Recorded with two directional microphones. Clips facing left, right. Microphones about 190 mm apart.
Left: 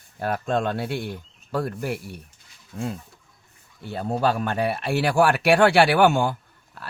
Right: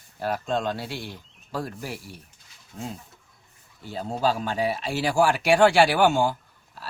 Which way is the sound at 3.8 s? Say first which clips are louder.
Left 2 dB; 60° left (ahead or behind).